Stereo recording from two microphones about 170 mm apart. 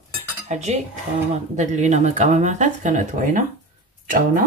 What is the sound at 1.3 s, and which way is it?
Speech, 45° right (ahead or behind).